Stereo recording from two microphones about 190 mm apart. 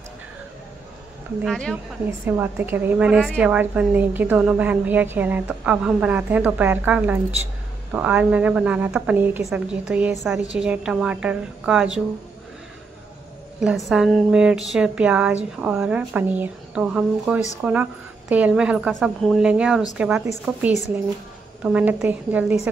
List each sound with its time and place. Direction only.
1.4 s a woman's voice: centre (ahead or behind)
2.0 s a woman's voice: 10° right (ahead or behind)
13.6 s a woman's voice: centre (ahead or behind)
21.6 s a woman's voice: 5° right (ahead or behind)